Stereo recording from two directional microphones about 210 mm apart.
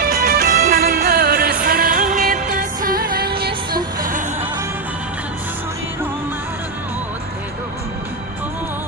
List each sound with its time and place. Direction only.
0.0 s music: 45° right (ahead or behind)